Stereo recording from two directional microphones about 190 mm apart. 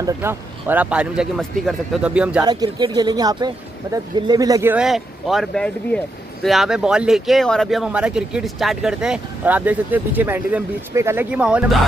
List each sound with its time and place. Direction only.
0.0 s a man's voice: 10° right (ahead or behind)
2.4 s speech: 20° right (ahead or behind)
4.7 s speech: centre (ahead or behind)